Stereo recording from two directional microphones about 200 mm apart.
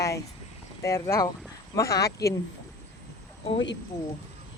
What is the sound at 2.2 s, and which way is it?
Speech, 55° left (ahead or behind).